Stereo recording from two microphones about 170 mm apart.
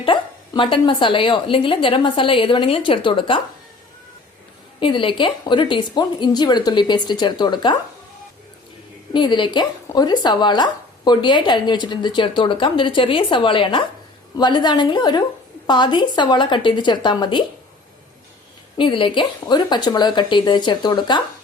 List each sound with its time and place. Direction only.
0.0 s speech: 30° left (ahead or behind)
4.8 s speech: 30° left (ahead or behind)
9.1 s speech: 25° left (ahead or behind)
18.8 s speech: 30° left (ahead or behind)